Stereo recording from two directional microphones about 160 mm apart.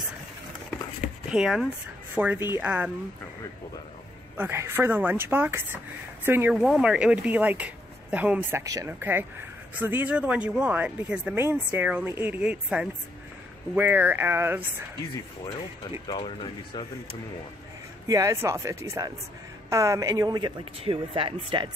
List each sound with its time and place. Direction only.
1.3 s speech: 5° right (ahead or behind)
4.4 s speech: 15° right (ahead or behind)
6.5 s speech: centre (ahead or behind)
16.1 s speech: 30° left (ahead or behind)
18.0 s a man's voice: 20° right (ahead or behind)